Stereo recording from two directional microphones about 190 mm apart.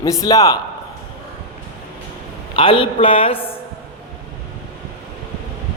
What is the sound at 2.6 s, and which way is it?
Speech, 25° left (ahead or behind).